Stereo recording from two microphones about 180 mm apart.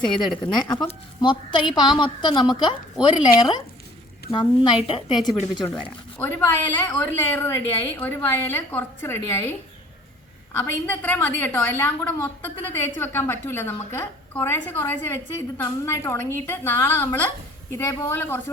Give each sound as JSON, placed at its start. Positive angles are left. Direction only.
{"t": 0.5, "sound": "a woman's voice", "side_deg": 25}
{"t": 5.7, "sound": "a woman's voice", "side_deg": 10}
{"t": 10.5, "sound": "a woman's voice", "side_deg": 10}